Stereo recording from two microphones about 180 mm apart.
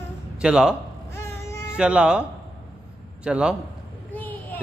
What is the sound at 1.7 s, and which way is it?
Speech, 5° right (ahead or behind).